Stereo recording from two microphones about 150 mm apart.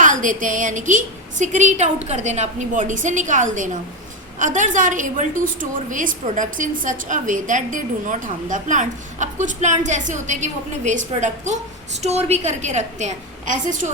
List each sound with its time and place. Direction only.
0.0 s a woman's voice: 60° right (ahead or behind)